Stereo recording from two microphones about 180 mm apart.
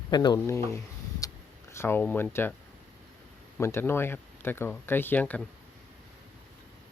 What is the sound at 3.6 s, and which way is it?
Speech, 15° left (ahead or behind).